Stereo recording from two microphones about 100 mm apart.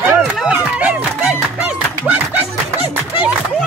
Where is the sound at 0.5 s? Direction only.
15° right (ahead or behind).